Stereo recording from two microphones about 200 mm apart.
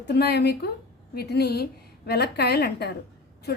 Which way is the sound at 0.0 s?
55° left (ahead or behind).